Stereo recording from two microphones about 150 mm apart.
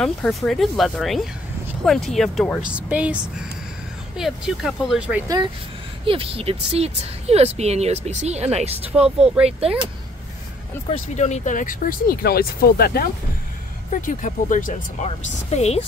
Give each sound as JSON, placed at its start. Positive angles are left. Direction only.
{"t": 0.0, "sound": "speech", "side_deg": 0}
{"t": 4.2, "sound": "speech", "side_deg": 0}
{"t": 6.0, "sound": "speech", "side_deg": -40}
{"t": 10.9, "sound": "speech", "side_deg": 50}
{"t": 14.0, "sound": "speech", "side_deg": 60}